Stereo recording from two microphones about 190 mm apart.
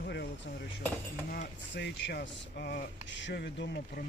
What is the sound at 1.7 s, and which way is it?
Speech, 60° left (ahead or behind).